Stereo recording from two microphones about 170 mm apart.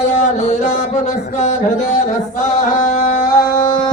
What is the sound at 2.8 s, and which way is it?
Speech, 45° left (ahead or behind).